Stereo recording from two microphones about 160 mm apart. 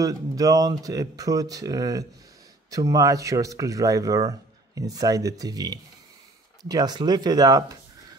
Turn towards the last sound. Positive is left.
turn(degrees=-25)  # may be behind; listen again after turning